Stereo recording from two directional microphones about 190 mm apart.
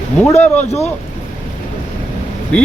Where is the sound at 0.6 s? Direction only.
35° left (ahead or behind).